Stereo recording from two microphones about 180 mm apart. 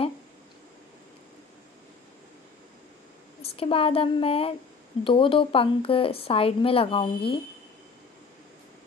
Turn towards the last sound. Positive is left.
turn(degrees=30)  # may be behind; listen again after turning